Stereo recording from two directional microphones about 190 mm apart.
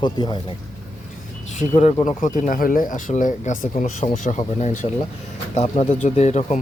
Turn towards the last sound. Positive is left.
turn(degrees=35)  # may be behind; listen again after turning